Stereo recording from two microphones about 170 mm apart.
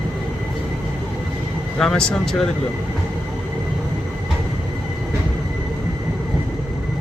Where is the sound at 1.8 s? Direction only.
5° left (ahead or behind).